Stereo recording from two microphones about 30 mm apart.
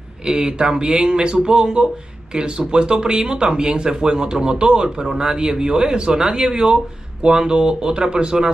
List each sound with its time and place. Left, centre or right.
0.3 s speech: right